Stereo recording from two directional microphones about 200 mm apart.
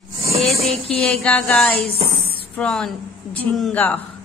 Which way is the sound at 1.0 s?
5° left (ahead or behind).